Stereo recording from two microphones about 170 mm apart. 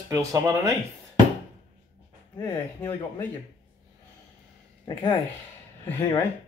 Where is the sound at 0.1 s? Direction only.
15° right (ahead or behind).